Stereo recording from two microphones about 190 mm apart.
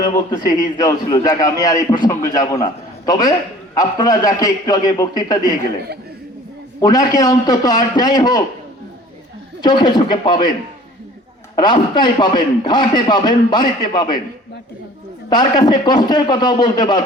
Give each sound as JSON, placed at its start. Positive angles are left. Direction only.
{"t": 0.0, "sound": "a man's voice", "side_deg": 20}
{"t": 6.8, "sound": "a man's voice", "side_deg": 20}
{"t": 9.6, "sound": "a man's voice", "side_deg": 25}
{"t": 11.6, "sound": "a man's voice", "side_deg": 25}
{"t": 15.3, "sound": "a man's voice", "side_deg": 20}